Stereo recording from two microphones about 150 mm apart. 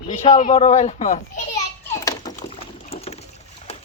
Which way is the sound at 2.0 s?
25° left (ahead or behind).